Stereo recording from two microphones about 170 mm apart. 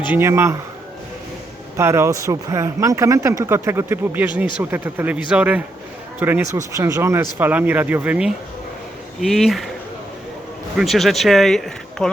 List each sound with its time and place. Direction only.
0.0 s speech: 10° right (ahead or behind)
1.7 s speech: 15° right (ahead or behind)
10.8 s speech: centre (ahead or behind)